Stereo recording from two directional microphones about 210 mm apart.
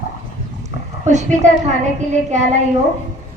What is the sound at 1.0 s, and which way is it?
A woman's voice, 35° right (ahead or behind).